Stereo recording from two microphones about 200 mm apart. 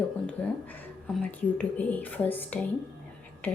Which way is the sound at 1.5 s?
10° left (ahead or behind).